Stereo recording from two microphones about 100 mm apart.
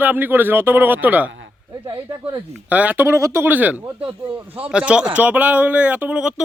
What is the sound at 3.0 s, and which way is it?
Speech, 30° right (ahead or behind).